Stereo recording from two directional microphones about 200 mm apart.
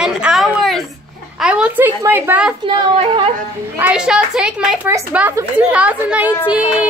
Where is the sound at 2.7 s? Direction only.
25° right (ahead or behind).